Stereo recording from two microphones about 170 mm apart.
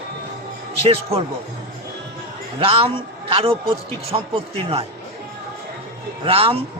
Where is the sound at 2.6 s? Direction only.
35° right (ahead or behind).